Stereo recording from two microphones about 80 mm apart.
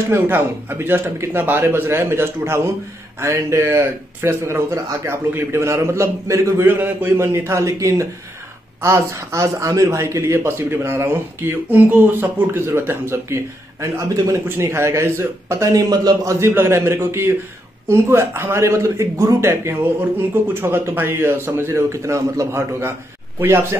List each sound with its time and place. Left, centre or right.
0.1 s a man's voice: right
15.7 s speech: right
16.3 s a man's voice: right